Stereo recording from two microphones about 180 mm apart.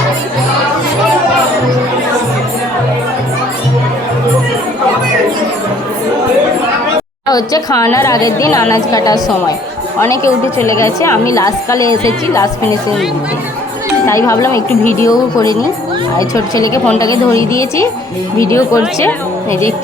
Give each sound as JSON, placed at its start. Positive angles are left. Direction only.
{"t": 7.3, "sound": "a woman's voice", "side_deg": 20}
{"t": 14.1, "sound": "a woman's voice", "side_deg": 15}